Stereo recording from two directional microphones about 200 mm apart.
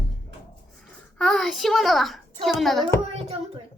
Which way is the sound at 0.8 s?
5° left (ahead or behind).